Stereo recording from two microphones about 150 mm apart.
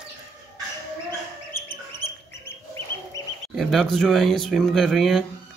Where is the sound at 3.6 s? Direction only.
Centre (ahead or behind).